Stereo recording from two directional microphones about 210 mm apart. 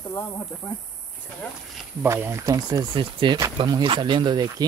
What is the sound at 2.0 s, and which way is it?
Speech, 15° right (ahead or behind).